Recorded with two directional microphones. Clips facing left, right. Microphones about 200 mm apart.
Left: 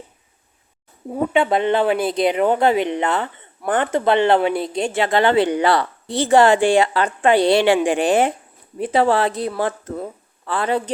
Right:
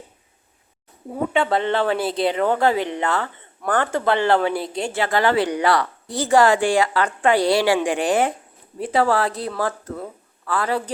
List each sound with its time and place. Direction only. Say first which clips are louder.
1.3 s a woman's voice: left 3 dB; 15° left (ahead or behind)